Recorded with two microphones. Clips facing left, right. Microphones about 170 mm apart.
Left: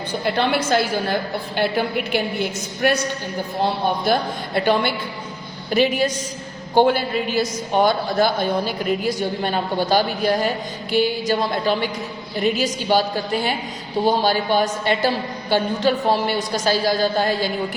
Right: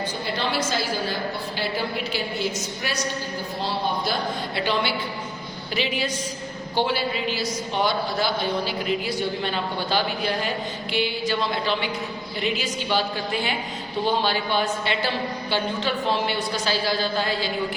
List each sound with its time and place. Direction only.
0.3 s a woman's voice: 60° left (ahead or behind)